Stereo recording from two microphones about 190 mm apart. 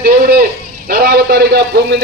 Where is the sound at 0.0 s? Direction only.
50° right (ahead or behind).